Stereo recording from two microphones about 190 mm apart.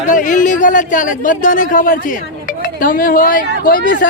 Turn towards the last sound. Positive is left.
turn(degrees=45)  # may be behind; listen again after turning